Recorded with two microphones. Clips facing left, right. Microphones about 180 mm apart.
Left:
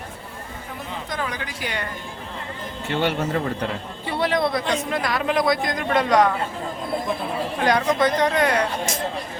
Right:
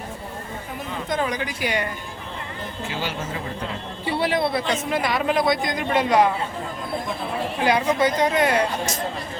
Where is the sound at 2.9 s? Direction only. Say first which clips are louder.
Left 8 dB; 60° left (ahead or behind).